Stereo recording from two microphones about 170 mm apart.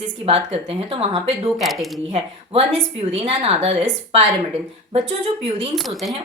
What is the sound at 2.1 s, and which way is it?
A woman's voice, 35° right (ahead or behind).